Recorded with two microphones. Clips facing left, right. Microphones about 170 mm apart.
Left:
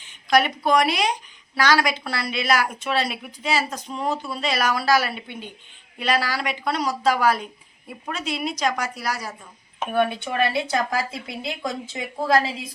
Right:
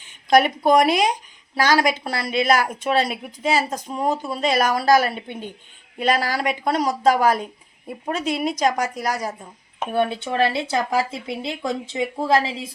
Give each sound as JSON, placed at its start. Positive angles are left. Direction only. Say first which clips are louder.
{"t": 0.3, "sound": "a woman's voice", "louder": "right 4 dB", "side_deg": -50}
{"t": 9.9, "sound": "speech", "louder": "right 1 dB", "side_deg": -30}